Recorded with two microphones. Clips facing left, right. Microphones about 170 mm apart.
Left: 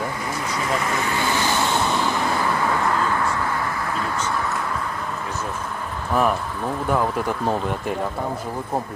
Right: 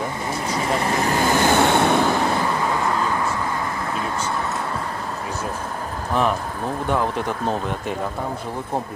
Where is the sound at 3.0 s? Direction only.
15° right (ahead or behind).